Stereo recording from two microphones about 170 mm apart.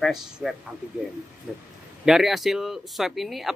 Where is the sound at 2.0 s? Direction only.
Centre (ahead or behind).